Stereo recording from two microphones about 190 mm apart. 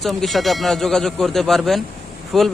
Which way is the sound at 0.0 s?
Centre (ahead or behind).